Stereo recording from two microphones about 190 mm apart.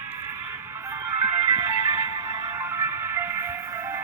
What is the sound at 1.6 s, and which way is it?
Music, 15° right (ahead or behind).